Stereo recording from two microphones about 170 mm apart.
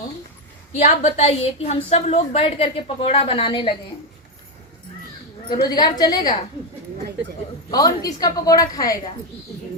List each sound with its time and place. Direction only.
0.8 s a woman's voice: 40° left (ahead or behind)
5.6 s a woman's voice: 25° left (ahead or behind)
7.7 s a woman's voice: 20° left (ahead or behind)